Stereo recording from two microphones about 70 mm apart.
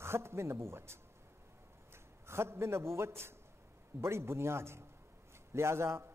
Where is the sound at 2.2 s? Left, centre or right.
Right.